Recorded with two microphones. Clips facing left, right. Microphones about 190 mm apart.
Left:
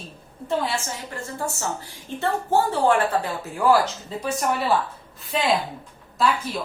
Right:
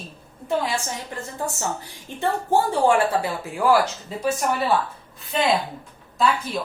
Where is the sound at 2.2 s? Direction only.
15° right (ahead or behind).